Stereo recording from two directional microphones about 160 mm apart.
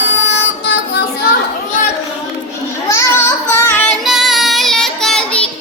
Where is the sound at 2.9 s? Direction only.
15° left (ahead or behind).